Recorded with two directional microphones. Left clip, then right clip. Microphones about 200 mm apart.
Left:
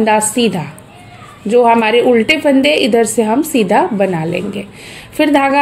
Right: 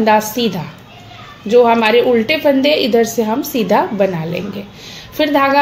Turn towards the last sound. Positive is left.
turn(degrees=35)  # may be behind; listen again after turning